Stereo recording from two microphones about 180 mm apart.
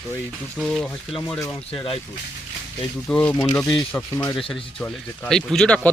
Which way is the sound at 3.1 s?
10° left (ahead or behind).